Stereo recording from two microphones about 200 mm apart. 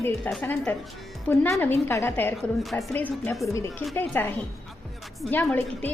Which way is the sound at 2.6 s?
Centre (ahead or behind).